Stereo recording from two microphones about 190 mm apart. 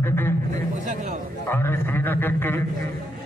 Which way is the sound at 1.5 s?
15° left (ahead or behind).